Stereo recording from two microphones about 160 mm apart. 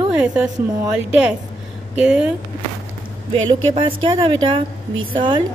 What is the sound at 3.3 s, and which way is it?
A woman's voice, 30° right (ahead or behind).